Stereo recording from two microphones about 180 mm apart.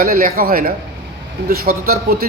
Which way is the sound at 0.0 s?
55° right (ahead or behind).